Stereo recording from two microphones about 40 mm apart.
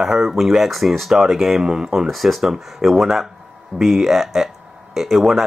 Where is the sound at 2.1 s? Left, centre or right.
Centre.